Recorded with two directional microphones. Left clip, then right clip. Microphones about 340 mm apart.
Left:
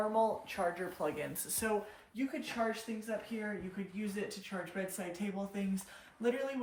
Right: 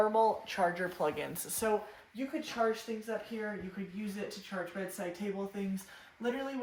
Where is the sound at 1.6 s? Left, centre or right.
Centre.